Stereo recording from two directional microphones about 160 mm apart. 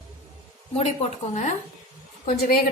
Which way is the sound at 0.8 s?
45° left (ahead or behind).